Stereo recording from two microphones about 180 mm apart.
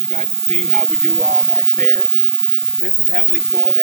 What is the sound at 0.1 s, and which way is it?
Speech, 40° right (ahead or behind).